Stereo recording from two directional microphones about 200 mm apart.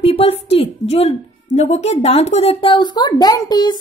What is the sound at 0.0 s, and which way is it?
A woman's voice, 30° left (ahead or behind).